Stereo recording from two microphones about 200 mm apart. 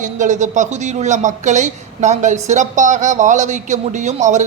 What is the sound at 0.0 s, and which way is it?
Speech, 40° right (ahead or behind).